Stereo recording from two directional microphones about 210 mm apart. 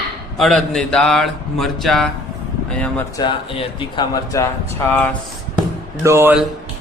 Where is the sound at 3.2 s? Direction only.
25° left (ahead or behind).